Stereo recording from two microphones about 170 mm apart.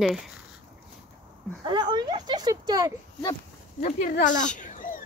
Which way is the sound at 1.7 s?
25° right (ahead or behind).